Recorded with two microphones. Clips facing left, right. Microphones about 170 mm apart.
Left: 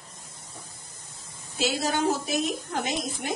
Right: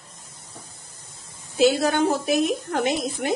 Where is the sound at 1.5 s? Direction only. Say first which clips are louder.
Right 8 dB; 60° right (ahead or behind).